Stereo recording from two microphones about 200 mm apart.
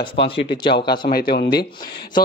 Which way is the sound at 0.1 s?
55° left (ahead or behind).